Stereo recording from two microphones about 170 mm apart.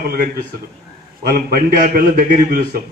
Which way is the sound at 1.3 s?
60° right (ahead or behind).